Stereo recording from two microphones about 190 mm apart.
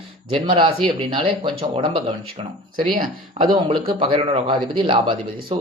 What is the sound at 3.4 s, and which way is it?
Speech, 25° right (ahead or behind).